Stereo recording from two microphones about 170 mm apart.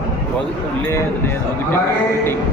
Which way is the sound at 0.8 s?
15° left (ahead or behind).